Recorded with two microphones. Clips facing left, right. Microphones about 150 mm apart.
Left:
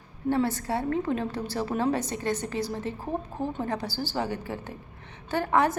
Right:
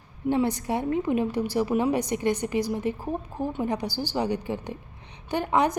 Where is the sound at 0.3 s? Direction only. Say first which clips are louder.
Right 2 dB; 15° right (ahead or behind).